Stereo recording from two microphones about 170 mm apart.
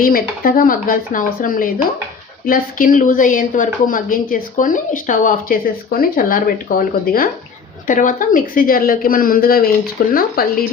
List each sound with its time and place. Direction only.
0.0 s a woman's voice: 55° left (ahead or behind)